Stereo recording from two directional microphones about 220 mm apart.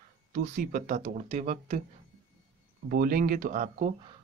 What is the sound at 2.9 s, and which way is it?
Speech, 40° right (ahead or behind).